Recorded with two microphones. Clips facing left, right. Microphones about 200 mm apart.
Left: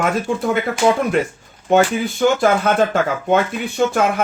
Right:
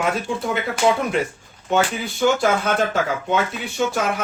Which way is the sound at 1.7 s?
55° left (ahead or behind).